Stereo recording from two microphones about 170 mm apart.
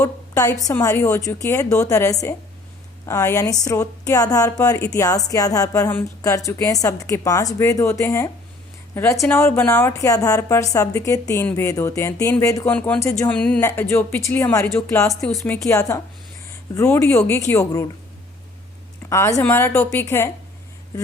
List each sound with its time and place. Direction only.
0.0 s a woman's voice: 20° left (ahead or behind)
15.1 s speech: centre (ahead or behind)
15.7 s a woman's voice: 20° left (ahead or behind)
19.0 s a woman's voice: 15° left (ahead or behind)